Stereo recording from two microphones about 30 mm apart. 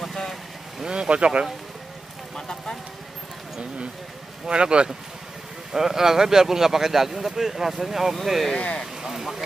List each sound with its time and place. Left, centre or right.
0.0 s vehicle: centre
0.8 s speech: right
2.3 s a sound: left
4.5 s speech: right
5.7 s a man's voice: centre
8.5 s speech: left
9.0 s a sound: centre